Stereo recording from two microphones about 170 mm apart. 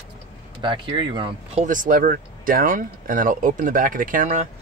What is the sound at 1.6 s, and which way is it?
Speech, 50° right (ahead or behind).